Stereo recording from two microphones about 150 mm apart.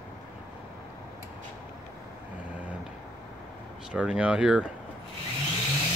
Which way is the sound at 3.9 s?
5° right (ahead or behind).